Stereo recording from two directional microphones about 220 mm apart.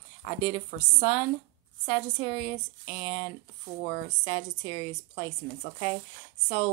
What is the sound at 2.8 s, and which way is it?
Speech, 20° left (ahead or behind).